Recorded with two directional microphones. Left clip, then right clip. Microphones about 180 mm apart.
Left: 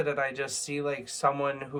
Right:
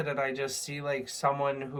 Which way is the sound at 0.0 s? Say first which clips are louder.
Left 2 dB; 25° left (ahead or behind).